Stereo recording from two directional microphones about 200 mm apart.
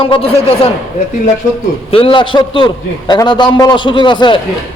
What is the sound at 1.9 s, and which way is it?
A man's voice, 25° left (ahead or behind).